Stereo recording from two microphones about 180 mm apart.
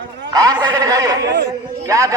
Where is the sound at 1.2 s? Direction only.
70° right (ahead or behind).